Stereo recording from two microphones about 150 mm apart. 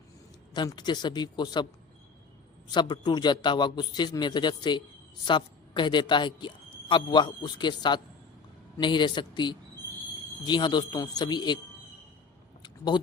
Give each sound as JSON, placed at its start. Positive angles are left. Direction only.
{"t": 0.5, "sound": "a man's voice", "side_deg": 30}
{"t": 2.7, "sound": "a man's voice", "side_deg": 30}
{"t": 12.6, "sound": "a sound", "side_deg": 30}